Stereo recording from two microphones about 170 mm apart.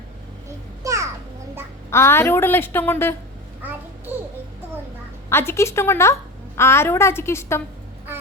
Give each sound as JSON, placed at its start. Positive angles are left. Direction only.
{"t": 0.8, "sound": "a sound", "side_deg": -20}
{"t": 1.9, "sound": "a woman's voice", "side_deg": 15}
{"t": 3.6, "sound": "babbling", "side_deg": -10}
{"t": 5.3, "sound": "a woman's voice", "side_deg": 15}